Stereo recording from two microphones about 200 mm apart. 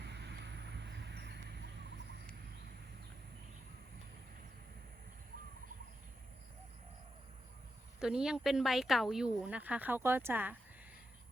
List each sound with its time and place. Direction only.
0.0 s vehicle: 60° right (ahead or behind)
7.9 s speech: 5° right (ahead or behind)